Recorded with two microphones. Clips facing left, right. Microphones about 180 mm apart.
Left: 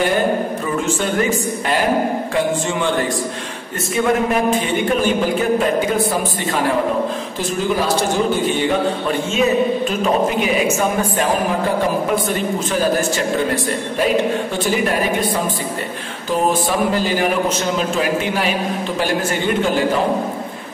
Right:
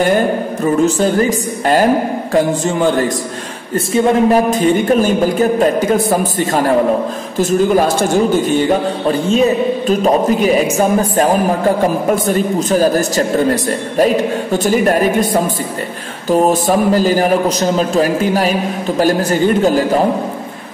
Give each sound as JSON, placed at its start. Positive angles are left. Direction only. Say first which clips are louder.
{"t": 0.8, "sound": "a man's voice", "louder": "right 6 dB", "side_deg": -40}
{"t": 3.9, "sound": "a man's voice", "louder": "right 6 dB", "side_deg": -35}
{"t": 7.7, "sound": "a woman's voice", "louder": "right 6 dB", "side_deg": -50}
{"t": 9.8, "sound": "a man's voice", "louder": "right 5 dB", "side_deg": -40}
{"t": 12.3, "sound": "a man's voice", "louder": "right 6 dB", "side_deg": -40}
{"t": 14.6, "sound": "a woman's voice", "louder": "right 7 dB", "side_deg": -45}